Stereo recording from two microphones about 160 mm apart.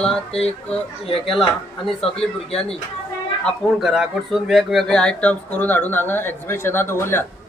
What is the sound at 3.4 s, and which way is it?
Speech, 5° left (ahead or behind).